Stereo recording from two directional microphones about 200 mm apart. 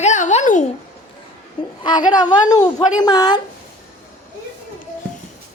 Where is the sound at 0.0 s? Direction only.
35° left (ahead or behind).